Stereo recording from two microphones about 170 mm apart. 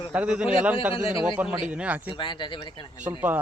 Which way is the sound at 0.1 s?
5° right (ahead or behind).